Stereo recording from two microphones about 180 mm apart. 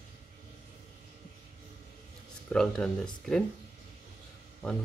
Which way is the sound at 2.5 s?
5° left (ahead or behind).